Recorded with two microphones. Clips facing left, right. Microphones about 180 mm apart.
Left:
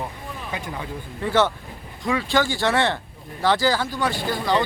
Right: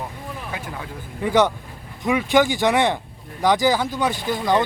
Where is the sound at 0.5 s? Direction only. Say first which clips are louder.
Left 4 dB; centre (ahead or behind).